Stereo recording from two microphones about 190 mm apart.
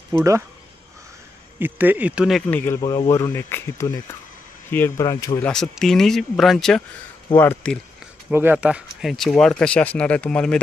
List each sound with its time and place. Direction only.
0.1 s speech: 15° right (ahead or behind)
1.6 s speech: 10° right (ahead or behind); by 2.8 s 10° left (ahead or behind)
2.8 s speech: 20° left (ahead or behind)
5.4 s speech: 5° left (ahead or behind)
8.3 s speech: 10° right (ahead or behind)